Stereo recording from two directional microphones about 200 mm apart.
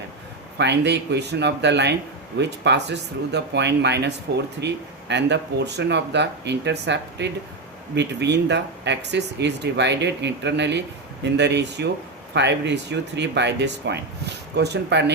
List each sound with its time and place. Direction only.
0.6 s speech: 60° right (ahead or behind)